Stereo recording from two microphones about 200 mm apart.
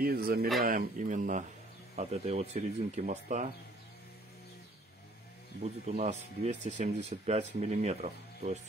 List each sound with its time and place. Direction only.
0.0 s speech: 50° right (ahead or behind)
0.7 s speech: 40° right (ahead or behind)
5.6 s speech: 35° right (ahead or behind)